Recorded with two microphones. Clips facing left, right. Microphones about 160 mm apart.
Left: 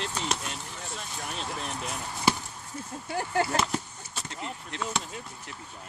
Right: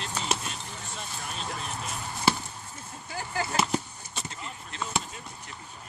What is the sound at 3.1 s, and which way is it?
Speech, 60° left (ahead or behind).